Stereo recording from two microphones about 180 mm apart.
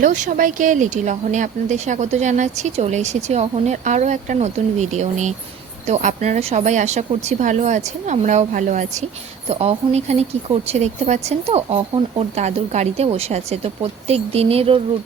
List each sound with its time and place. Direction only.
0.0 s speech: 45° right (ahead or behind)